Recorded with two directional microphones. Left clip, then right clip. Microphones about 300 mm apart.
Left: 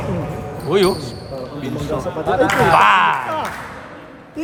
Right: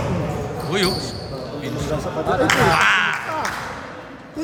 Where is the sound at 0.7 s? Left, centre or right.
Centre.